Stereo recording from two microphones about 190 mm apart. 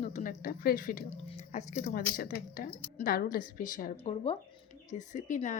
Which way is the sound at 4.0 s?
30° left (ahead or behind).